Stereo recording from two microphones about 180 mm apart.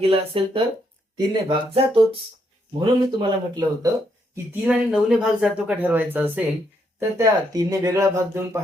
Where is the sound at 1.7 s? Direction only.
30° right (ahead or behind).